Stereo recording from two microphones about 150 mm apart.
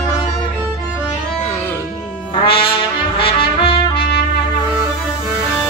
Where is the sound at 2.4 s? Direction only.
35° left (ahead or behind).